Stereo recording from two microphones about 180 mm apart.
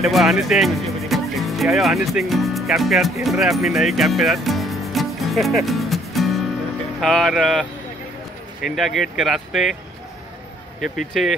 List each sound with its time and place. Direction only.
0.0 s speech: centre (ahead or behind)
8.6 s speech: centre (ahead or behind)